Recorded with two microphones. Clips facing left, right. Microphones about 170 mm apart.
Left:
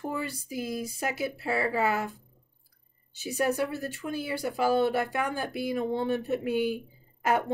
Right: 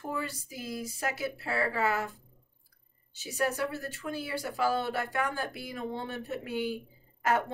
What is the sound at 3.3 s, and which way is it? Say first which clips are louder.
Speech: left 3 dB; 20° left (ahead or behind).